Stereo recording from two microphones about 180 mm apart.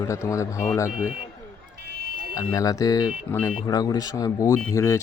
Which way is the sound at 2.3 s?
20° left (ahead or behind).